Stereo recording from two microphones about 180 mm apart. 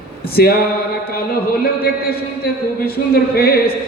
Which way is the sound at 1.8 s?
60° left (ahead or behind).